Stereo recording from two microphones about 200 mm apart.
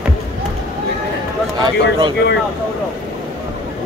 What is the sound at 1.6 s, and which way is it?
Speech, 25° right (ahead or behind).